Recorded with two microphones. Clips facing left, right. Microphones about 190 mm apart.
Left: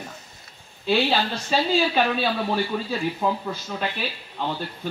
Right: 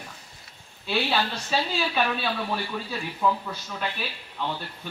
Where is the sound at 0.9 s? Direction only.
35° left (ahead or behind).